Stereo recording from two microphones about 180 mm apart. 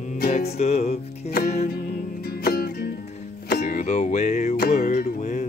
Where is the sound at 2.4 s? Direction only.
60° left (ahead or behind).